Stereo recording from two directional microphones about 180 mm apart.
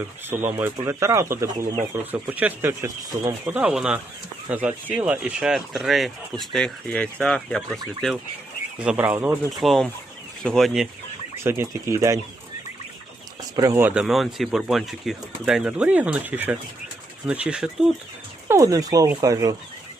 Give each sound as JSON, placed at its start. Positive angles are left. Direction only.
{"t": 0.0, "sound": "speech", "side_deg": -10}
{"t": 9.5, "sound": "speech", "side_deg": 0}
{"t": 11.4, "sound": "speech", "side_deg": -15}
{"t": 13.6, "sound": "speech", "side_deg": -15}
{"t": 18.4, "sound": "speech", "side_deg": -15}